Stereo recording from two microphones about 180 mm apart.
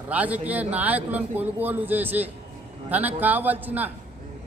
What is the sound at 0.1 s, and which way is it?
A man's voice, 10° right (ahead or behind).